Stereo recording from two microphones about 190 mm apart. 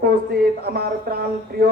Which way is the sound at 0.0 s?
55° right (ahead or behind).